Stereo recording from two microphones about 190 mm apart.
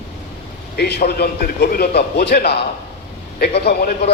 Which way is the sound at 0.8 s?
55° left (ahead or behind).